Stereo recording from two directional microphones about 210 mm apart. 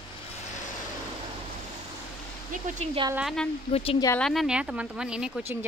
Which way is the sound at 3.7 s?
25° left (ahead or behind).